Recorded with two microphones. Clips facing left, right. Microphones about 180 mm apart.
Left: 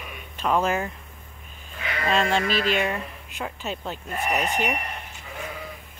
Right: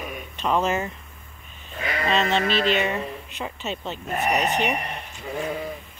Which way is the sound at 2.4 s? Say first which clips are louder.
Right 2 dB; 45° left (ahead or behind).